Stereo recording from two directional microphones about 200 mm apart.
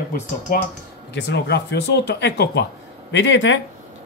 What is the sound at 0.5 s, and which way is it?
Speech, 45° left (ahead or behind).